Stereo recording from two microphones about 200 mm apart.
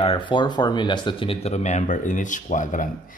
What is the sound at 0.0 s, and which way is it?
Speech, 25° left (ahead or behind).